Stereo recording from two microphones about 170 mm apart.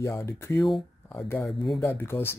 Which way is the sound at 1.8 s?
15° left (ahead or behind).